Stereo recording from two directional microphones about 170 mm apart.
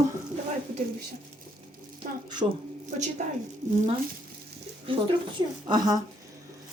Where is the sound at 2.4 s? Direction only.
25° right (ahead or behind).